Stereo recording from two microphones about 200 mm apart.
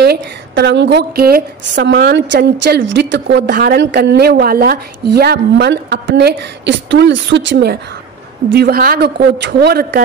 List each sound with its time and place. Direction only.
0.0 s a woman's voice: 55° right (ahead or behind)